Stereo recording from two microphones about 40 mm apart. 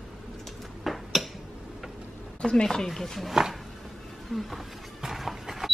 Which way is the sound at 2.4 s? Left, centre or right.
Centre.